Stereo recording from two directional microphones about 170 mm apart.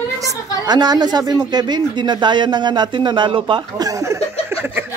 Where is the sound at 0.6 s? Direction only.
25° right (ahead or behind).